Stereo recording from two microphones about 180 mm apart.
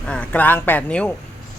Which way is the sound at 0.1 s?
10° left (ahead or behind).